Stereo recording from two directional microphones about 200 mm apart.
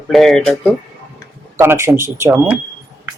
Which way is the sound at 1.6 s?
10° right (ahead or behind).